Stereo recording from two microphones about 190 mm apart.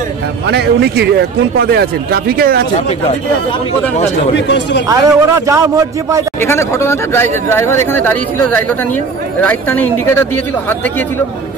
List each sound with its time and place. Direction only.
0.5 s speech: 60° right (ahead or behind)
4.5 s speech: 70° left (ahead or behind)
4.8 s a man's voice: 15° right (ahead or behind)
6.4 s speech: 15° left (ahead or behind)